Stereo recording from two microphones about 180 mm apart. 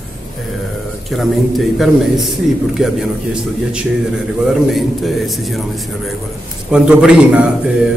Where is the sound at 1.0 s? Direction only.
Centre (ahead or behind).